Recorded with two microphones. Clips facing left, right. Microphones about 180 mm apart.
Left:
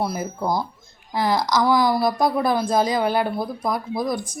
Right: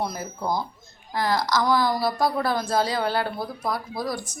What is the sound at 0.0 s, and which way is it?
Speech, 10° left (ahead or behind).